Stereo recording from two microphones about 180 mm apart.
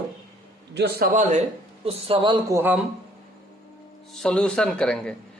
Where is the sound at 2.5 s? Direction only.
10° right (ahead or behind).